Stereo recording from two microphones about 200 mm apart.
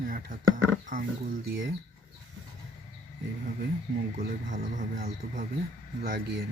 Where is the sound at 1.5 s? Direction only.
70° right (ahead or behind).